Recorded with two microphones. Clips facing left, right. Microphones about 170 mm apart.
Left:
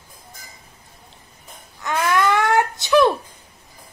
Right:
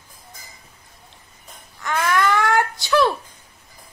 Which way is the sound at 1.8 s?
15° left (ahead or behind).